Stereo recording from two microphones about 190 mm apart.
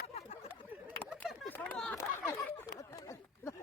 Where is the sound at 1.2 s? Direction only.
10° left (ahead or behind).